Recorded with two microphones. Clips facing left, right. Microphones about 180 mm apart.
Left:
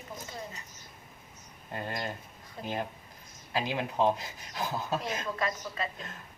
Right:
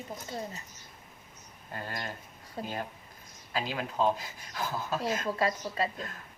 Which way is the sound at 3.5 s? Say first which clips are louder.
Left 2 dB; 20° left (ahead or behind).